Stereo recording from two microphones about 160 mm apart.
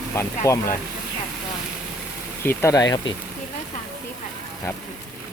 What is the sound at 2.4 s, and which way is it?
Speech, 20° left (ahead or behind).